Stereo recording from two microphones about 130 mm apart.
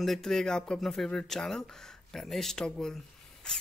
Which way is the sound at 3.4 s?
5° left (ahead or behind).